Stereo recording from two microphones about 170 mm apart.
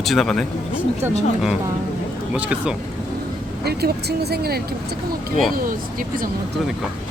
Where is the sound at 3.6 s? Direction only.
70° right (ahead or behind).